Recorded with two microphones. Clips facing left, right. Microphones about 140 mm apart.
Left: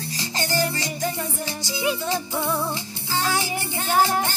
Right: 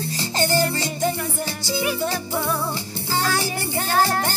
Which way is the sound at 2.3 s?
20° left (ahead or behind).